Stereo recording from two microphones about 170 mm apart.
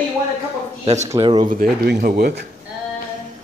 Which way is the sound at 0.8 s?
40° right (ahead or behind).